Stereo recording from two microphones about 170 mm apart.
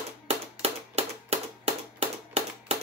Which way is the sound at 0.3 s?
35° right (ahead or behind).